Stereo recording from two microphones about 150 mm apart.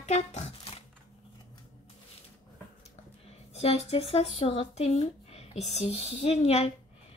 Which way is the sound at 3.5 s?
45° left (ahead or behind).